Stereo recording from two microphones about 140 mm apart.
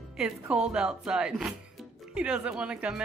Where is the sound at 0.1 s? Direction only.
5° right (ahead or behind).